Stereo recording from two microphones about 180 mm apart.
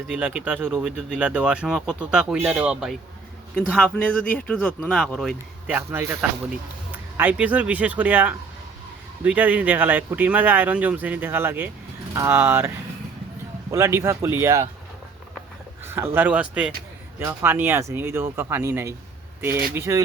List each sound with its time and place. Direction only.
0.1 s speech: 5° right (ahead or behind)
5.6 s speech: 10° right (ahead or behind)
15.8 s a sound: 10° right (ahead or behind)
16.1 s speech: 10° right (ahead or behind)